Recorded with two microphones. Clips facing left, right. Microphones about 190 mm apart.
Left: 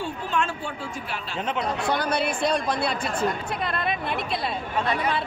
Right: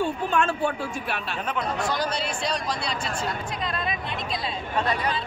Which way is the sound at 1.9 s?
60° left (ahead or behind).